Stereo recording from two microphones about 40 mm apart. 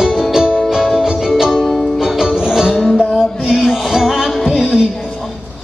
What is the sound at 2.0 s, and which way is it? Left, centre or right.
Music, centre.